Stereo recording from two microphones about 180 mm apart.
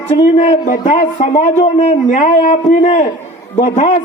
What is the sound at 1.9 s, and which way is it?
A man's voice, 45° left (ahead or behind).